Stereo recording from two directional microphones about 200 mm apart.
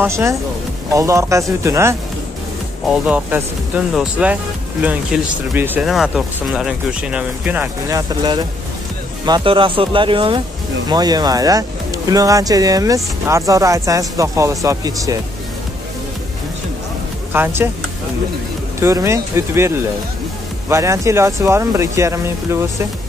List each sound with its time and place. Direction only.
0.0 s speech: 15° right (ahead or behind)
3.1 s speech: 10° right (ahead or behind)
8.2 s speech: 20° right (ahead or behind)
17.3 s speech: 10° right (ahead or behind)
18.8 s speech: 15° right (ahead or behind)